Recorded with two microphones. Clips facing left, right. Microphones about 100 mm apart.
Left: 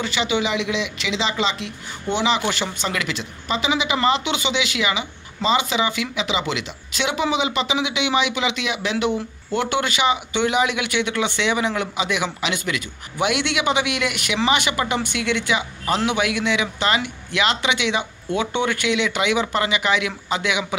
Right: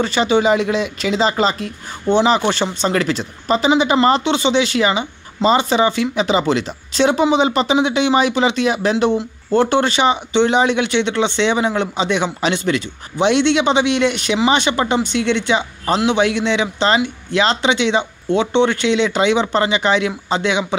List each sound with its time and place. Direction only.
0.0 s speech: 35° right (ahead or behind)